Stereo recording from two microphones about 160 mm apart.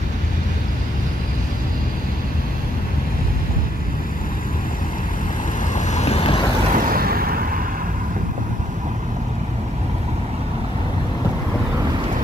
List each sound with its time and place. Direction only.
5.8 s vehicle: 45° left (ahead or behind)
6.7 s vehicle: 65° right (ahead or behind)